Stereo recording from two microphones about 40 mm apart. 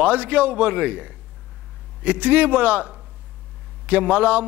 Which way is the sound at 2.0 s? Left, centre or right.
Right.